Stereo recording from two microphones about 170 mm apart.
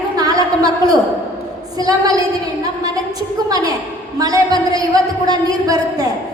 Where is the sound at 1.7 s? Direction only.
20° right (ahead or behind).